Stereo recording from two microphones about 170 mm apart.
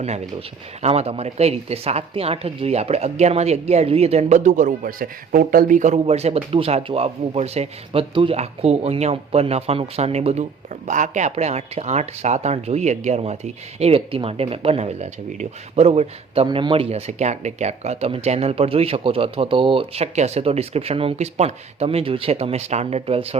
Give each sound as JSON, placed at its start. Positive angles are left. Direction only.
{"t": 0.8, "sound": "speech", "side_deg": -35}